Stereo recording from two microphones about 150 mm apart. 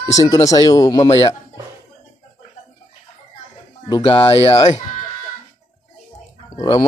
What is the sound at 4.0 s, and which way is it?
Speech, 35° left (ahead or behind).